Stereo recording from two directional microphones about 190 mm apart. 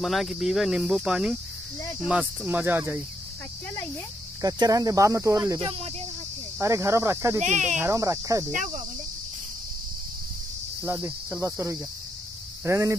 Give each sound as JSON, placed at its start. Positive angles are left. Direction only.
{"t": 0.0, "sound": "cricket", "side_deg": 0}
{"t": 4.4, "sound": "cricket", "side_deg": -20}
{"t": 5.6, "sound": "speech", "side_deg": -30}
{"t": 6.6, "sound": "cricket", "side_deg": -15}
{"t": 7.4, "sound": "speech", "side_deg": -40}
{"t": 7.7, "sound": "cricket", "side_deg": -15}
{"t": 8.5, "sound": "speech", "side_deg": -45}
{"t": 10.9, "sound": "cricket", "side_deg": -15}